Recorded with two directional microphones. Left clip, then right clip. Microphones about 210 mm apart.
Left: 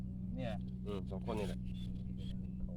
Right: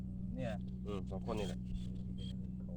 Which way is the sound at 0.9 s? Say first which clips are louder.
Even; 25° left (ahead or behind).